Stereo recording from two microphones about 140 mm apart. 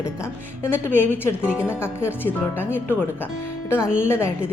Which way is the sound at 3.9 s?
15° left (ahead or behind).